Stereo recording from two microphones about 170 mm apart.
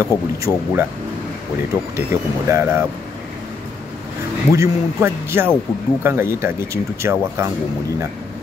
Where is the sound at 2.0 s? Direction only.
15° right (ahead or behind).